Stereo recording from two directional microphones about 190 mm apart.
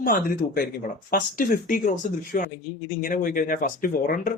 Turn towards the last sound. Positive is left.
turn(degrees=45)  # may be behind; listen again after turning